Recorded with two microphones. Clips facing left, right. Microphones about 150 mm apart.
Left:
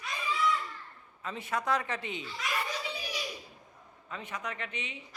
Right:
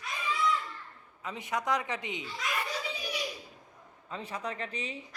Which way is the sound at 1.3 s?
15° right (ahead or behind).